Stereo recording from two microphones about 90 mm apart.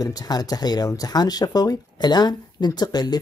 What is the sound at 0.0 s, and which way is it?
Speech, 45° left (ahead or behind).